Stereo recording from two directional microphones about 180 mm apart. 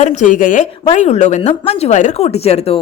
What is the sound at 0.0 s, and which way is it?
A woman's voice, 40° left (ahead or behind).